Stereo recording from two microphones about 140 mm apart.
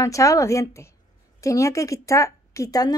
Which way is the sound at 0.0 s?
25° left (ahead or behind).